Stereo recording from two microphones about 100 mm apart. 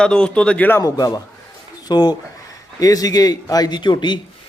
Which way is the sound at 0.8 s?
40° left (ahead or behind).